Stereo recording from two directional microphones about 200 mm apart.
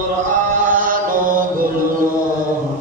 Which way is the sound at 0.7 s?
45° right (ahead or behind).